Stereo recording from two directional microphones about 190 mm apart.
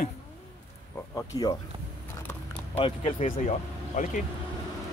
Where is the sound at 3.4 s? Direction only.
40° left (ahead or behind).